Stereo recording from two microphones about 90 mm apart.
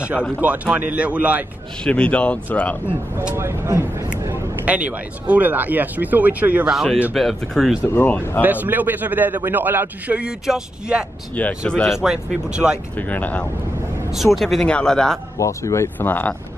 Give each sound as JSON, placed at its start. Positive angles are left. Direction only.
{"t": 0.7, "sound": "speech", "side_deg": -15}
{"t": 1.9, "sound": "speech", "side_deg": 15}
{"t": 3.3, "sound": "a man's voice", "side_deg": -30}
{"t": 4.6, "sound": "a man's voice", "side_deg": -15}
{"t": 6.7, "sound": "speech", "side_deg": 0}
{"t": 7.8, "sound": "speech", "side_deg": 25}
{"t": 8.4, "sound": "a man's voice", "side_deg": -20}
{"t": 12.0, "sound": "speech", "side_deg": -5}
{"t": 12.9, "sound": "speech", "side_deg": 20}
{"t": 14.1, "sound": "speech", "side_deg": 0}
{"t": 15.3, "sound": "speech", "side_deg": 35}